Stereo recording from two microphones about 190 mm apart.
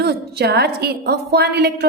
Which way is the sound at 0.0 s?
55° right (ahead or behind).